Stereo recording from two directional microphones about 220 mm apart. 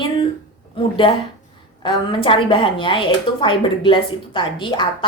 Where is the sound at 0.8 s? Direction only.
25° left (ahead or behind).